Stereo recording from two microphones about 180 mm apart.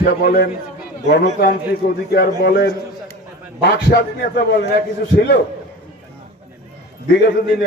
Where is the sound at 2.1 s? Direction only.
60° left (ahead or behind).